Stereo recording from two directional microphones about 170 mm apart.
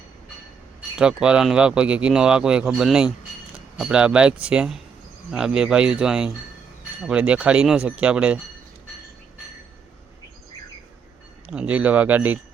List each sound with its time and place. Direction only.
0.9 s speech: 5° right (ahead or behind)
11.4 s speech: 5° right (ahead or behind)